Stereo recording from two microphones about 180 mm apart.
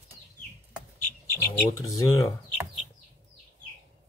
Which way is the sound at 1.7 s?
20° left (ahead or behind).